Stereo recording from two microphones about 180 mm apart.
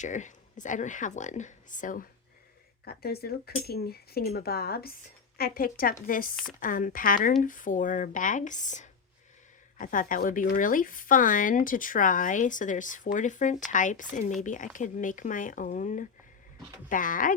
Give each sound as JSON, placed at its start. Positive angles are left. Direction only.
{"t": 0.0, "sound": "speech", "side_deg": 45}
{"t": 2.8, "sound": "speech", "side_deg": 60}